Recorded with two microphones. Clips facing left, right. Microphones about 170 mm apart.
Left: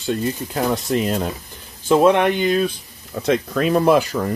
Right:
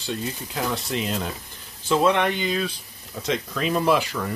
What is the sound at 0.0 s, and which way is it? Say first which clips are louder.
Speech: left 7 dB; 50° left (ahead or behind).